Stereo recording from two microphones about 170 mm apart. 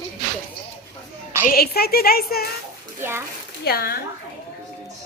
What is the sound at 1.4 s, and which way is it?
A woman's voice, 65° left (ahead or behind).